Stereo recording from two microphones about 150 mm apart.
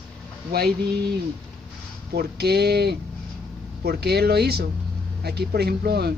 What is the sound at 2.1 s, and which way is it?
Speech, 90° right.